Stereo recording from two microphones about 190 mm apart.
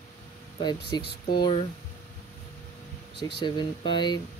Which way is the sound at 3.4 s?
25° left (ahead or behind).